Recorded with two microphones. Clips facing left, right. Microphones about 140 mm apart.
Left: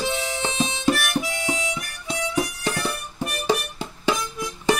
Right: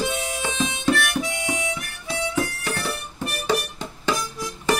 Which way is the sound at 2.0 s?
20° left (ahead or behind).